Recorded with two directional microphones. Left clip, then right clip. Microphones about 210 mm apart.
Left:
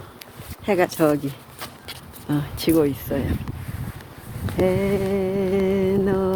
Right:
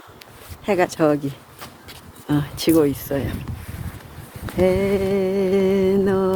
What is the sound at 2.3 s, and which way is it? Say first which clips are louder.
Speech: right 2 dB; 50° right (ahead or behind).